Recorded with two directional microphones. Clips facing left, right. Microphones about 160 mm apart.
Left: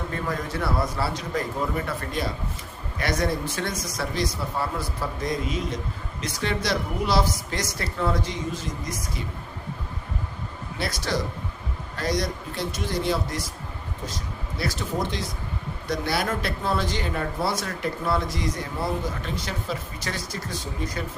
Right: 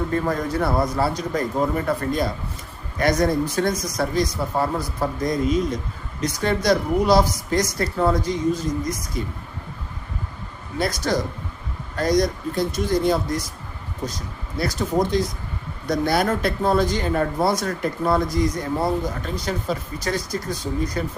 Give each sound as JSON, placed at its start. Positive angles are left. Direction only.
{"t": 0.3, "sound": "a woman's voice", "side_deg": -40}
{"t": 10.8, "sound": "a woman's voice", "side_deg": -45}
{"t": 14.6, "sound": "a woman's voice", "side_deg": -40}